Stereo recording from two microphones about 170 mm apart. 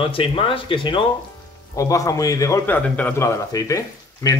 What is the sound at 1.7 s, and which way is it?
Speech, 20° left (ahead or behind).